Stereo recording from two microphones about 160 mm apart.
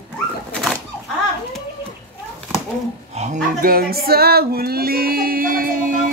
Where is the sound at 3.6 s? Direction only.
70° right (ahead or behind).